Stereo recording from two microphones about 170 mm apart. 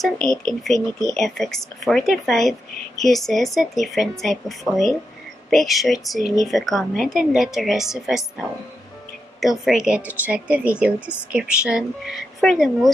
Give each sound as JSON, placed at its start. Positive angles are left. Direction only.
{"t": 0.0, "sound": "speech", "side_deg": 0}
{"t": 6.2, "sound": "a woman's voice", "side_deg": 20}
{"t": 6.5, "sound": "speech", "side_deg": 0}
{"t": 9.4, "sound": "speech", "side_deg": 0}